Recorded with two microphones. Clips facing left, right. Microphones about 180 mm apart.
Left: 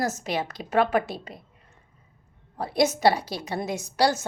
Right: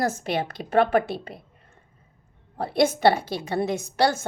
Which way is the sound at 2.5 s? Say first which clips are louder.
Right 2 dB; 55° right (ahead or behind).